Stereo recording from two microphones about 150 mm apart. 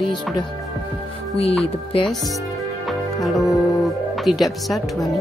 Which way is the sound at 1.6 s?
40° left (ahead or behind).